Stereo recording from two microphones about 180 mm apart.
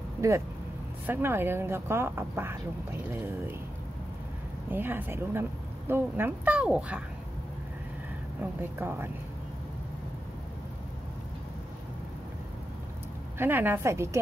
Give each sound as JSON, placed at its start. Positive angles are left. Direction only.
{"t": 1.0, "sound": "speech", "side_deg": -10}
{"t": 4.6, "sound": "speech", "side_deg": -10}
{"t": 8.4, "sound": "speech", "side_deg": -10}
{"t": 13.4, "sound": "speech", "side_deg": -10}